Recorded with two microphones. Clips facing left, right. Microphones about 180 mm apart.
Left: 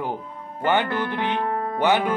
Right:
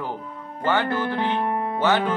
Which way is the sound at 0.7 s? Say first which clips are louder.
Even; 15° left (ahead or behind).